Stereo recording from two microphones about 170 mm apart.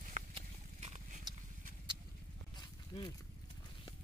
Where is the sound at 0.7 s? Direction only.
45° right (ahead or behind).